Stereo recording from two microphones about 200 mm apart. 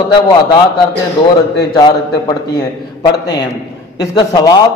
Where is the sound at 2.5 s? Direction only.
20° left (ahead or behind).